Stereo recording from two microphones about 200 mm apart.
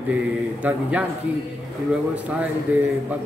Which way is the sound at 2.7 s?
10° right (ahead or behind).